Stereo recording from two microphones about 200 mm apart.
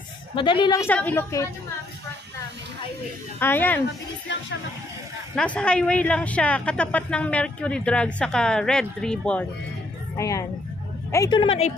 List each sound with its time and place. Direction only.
0.4 s a woman's voice: 25° left (ahead or behind)
0.8 s a woman's voice: 10° left (ahead or behind)
3.3 s a woman's voice: 10° left (ahead or behind)
5.3 s a woman's voice: 5° left (ahead or behind)
10.1 s a woman's voice: 15° left (ahead or behind)